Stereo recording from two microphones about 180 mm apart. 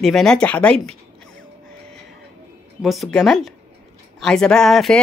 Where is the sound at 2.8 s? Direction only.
Centre (ahead or behind).